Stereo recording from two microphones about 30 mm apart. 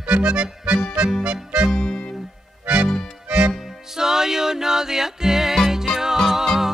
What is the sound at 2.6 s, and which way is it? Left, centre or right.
Music, right.